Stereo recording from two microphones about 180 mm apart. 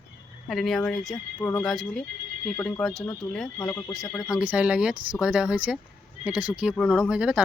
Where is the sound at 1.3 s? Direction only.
15° left (ahead or behind).